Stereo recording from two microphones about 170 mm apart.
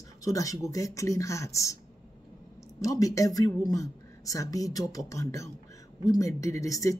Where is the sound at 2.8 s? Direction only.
20° left (ahead or behind).